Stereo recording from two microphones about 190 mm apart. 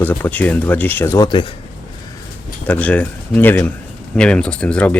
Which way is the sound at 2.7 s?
5° left (ahead or behind).